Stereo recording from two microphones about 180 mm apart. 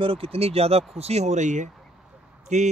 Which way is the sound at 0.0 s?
30° right (ahead or behind).